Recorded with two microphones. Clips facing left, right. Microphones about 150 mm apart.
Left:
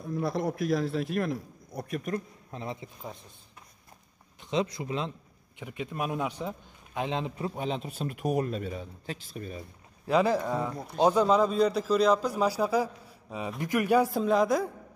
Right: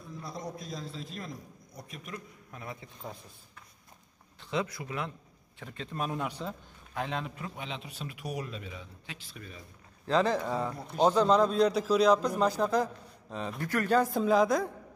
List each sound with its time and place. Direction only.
0.0 s a man's voice: 60° left (ahead or behind)
2.1 s a man's voice: 25° left (ahead or behind)
4.4 s a man's voice: 20° left (ahead or behind); by 9.6 s 40° left (ahead or behind)
10.0 s a man's voice: 10° left (ahead or behind)